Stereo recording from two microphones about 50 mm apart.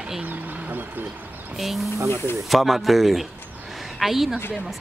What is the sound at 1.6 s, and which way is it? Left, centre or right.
Speech, centre.